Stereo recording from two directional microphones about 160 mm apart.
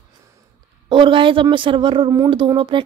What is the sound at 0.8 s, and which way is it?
A woman's voice, 30° right (ahead or behind).